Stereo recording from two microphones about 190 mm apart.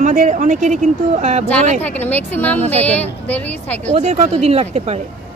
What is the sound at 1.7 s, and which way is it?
A woman's voice, 10° left (ahead or behind).